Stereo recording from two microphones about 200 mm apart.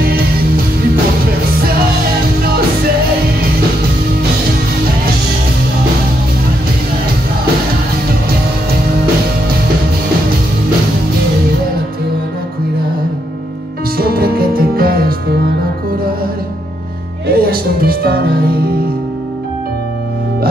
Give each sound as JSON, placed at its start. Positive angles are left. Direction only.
{"t": 13.9, "sound": "music", "side_deg": -50}
{"t": 17.3, "sound": "music", "side_deg": -50}